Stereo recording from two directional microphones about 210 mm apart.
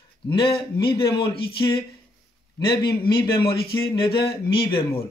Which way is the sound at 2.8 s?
20° left (ahead or behind).